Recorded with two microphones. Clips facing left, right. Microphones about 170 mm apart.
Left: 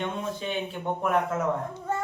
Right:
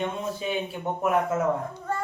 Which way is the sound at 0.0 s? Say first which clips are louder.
Right 2 dB; 10° right (ahead or behind).